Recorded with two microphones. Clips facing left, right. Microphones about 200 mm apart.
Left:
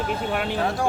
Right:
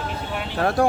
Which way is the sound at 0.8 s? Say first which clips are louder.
Right 6 dB; 60° right (ahead or behind).